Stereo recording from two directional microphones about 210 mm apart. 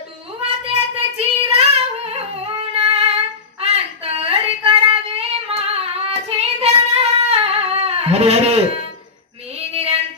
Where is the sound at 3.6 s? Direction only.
30° right (ahead or behind).